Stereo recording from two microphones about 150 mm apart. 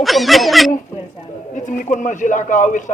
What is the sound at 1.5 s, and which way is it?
Speech, 55° left (ahead or behind).